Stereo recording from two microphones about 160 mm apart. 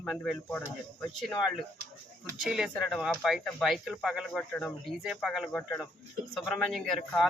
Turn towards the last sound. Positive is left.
turn(degrees=0)  # may be behind; listen again after turning